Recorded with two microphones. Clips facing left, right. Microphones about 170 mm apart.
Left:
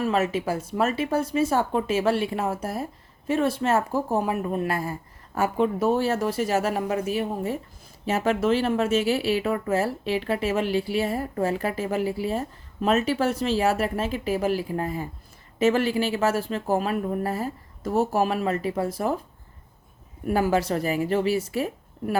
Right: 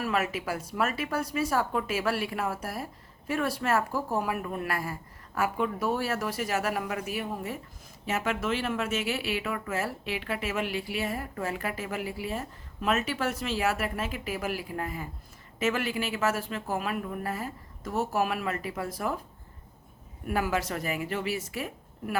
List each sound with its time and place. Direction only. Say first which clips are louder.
0.0 s a woman's voice: left 6 dB; 25° left (ahead or behind)
20.2 s speech: left 6 dB; 30° left (ahead or behind)